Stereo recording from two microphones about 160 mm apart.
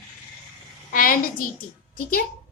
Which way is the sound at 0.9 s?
60° left (ahead or behind).